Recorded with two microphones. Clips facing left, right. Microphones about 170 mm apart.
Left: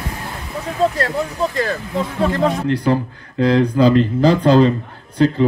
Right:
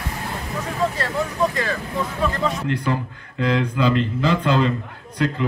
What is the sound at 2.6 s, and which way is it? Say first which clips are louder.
Speech: left 6 dB; 35° left (ahead or behind).